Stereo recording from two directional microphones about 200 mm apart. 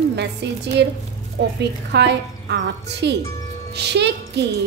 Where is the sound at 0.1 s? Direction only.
60° right (ahead or behind).